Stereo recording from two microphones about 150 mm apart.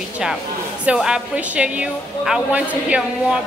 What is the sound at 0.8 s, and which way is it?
A woman's voice, 5° right (ahead or behind).